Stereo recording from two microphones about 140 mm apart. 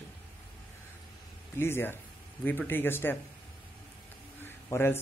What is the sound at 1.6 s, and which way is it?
A man's voice, 15° left (ahead or behind).